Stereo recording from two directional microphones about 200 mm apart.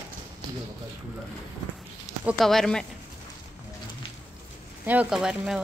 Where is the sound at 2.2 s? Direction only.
5° right (ahead or behind).